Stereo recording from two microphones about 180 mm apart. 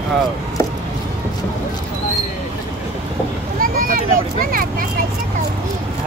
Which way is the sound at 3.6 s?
50° right (ahead or behind).